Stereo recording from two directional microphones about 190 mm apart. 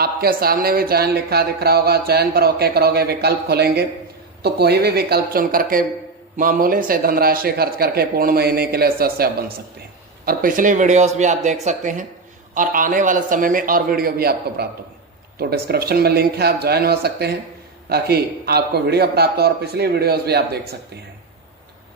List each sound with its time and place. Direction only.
0.0 s speech: 50° right (ahead or behind)